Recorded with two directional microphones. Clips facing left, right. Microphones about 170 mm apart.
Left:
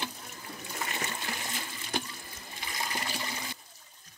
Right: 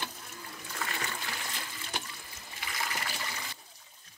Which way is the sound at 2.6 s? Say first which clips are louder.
Left 1 dB; 25° left (ahead or behind).